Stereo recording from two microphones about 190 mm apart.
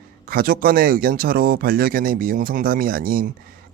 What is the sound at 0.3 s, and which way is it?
Speech, 50° right (ahead or behind).